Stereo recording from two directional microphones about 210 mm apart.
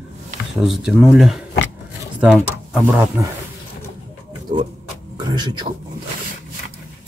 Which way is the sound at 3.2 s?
15° right (ahead or behind).